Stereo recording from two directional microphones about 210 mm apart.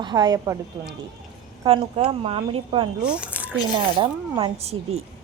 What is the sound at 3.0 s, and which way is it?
Speech, 5° right (ahead or behind).